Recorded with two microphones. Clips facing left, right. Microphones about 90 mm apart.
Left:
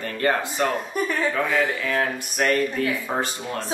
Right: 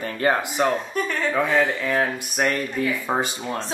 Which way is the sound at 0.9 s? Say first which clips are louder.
Even; 5° left (ahead or behind).